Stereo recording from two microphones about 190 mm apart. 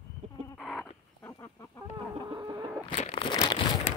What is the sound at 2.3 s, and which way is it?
Chicken, 20° right (ahead or behind).